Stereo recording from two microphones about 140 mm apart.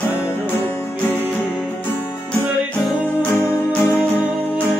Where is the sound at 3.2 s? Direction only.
15° left (ahead or behind).